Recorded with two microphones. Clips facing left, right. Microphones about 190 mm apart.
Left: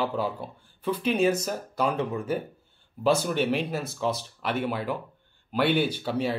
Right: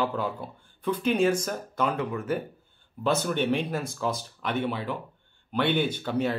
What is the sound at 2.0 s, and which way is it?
Speech, 25° left (ahead or behind).